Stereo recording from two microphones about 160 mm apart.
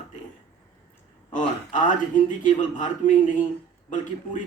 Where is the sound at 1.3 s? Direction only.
55° left (ahead or behind).